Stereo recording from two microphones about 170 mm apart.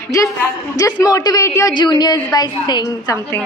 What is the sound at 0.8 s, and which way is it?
A woman's voice, 20° left (ahead or behind).